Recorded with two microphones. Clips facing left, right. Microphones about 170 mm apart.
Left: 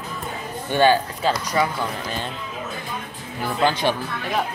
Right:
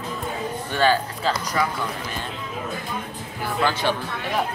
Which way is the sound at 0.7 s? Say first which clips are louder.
Left 4 dB; 25° left (ahead or behind).